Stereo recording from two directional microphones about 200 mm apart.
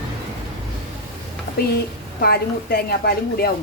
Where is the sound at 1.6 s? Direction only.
50° left (ahead or behind).